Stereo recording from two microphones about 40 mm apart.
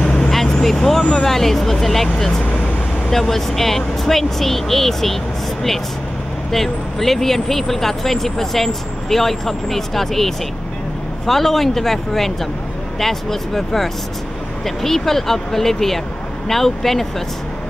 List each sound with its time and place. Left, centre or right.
0.0 s vehicle: left
0.6 s vehicle: centre
1.1 s speech: centre
2.4 s vehicle: left
3.1 s speech: centre
6.5 s speech: centre